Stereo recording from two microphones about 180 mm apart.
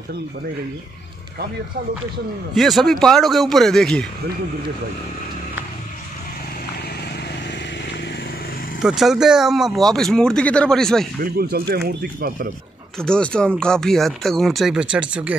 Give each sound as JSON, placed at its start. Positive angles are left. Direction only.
{"t": 2.5, "sound": "speech", "side_deg": 0}
{"t": 8.8, "sound": "speech", "side_deg": 0}
{"t": 11.1, "sound": "speech", "side_deg": -60}
{"t": 13.0, "sound": "speech", "side_deg": 5}